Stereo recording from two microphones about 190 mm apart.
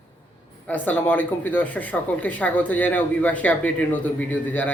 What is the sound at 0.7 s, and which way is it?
Speech, 10° left (ahead or behind).